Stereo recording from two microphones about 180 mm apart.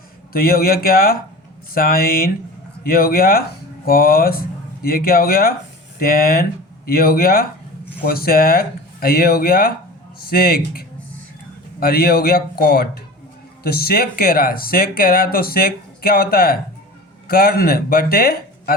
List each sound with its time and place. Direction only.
0.3 s speech: 55° left (ahead or behind)